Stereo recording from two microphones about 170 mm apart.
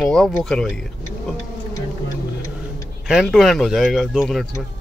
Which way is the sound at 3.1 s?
Centre (ahead or behind).